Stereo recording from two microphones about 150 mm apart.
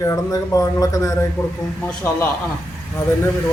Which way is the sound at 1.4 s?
5° left (ahead or behind).